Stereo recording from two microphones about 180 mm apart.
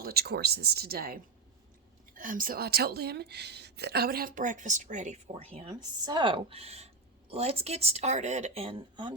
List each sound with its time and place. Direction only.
0.0 s a woman's voice: 60° right (ahead or behind); by 9.1 s 30° right (ahead or behind)